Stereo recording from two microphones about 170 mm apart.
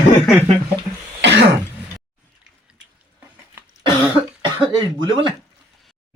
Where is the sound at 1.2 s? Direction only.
90° right.